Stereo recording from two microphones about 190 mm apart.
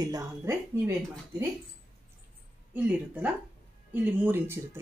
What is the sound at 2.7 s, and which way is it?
Speech, 10° right (ahead or behind).